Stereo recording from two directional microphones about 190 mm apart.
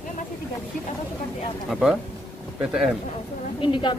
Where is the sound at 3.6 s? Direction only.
25° left (ahead or behind).